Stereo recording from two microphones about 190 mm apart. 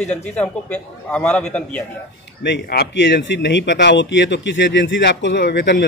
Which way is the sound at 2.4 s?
60° left (ahead or behind).